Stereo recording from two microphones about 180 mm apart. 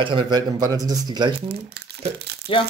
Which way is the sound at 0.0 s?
30° right (ahead or behind).